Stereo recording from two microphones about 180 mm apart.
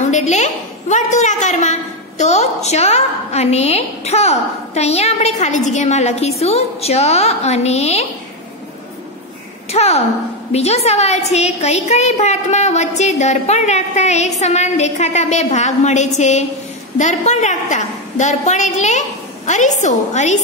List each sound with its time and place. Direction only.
0.1 s a woman's voice: 40° left (ahead or behind)
9.7 s a child's voice: 35° left (ahead or behind)